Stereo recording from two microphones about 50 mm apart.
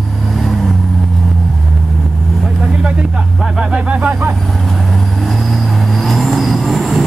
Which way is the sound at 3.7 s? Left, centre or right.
Right.